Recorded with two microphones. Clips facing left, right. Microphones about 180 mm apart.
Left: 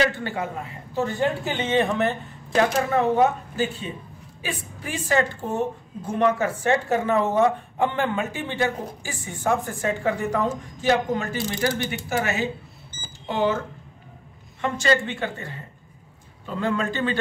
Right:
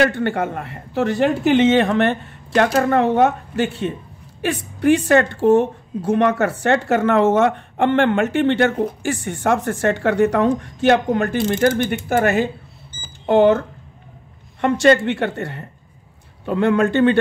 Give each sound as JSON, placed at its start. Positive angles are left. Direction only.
{"t": 0.0, "sound": "a woman's voice", "side_deg": -70}
{"t": 10.6, "sound": "speech", "side_deg": -65}
{"t": 14.6, "sound": "a woman's voice", "side_deg": -65}